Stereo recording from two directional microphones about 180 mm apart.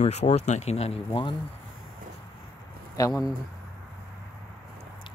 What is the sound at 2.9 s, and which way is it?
Speech, 20° left (ahead or behind).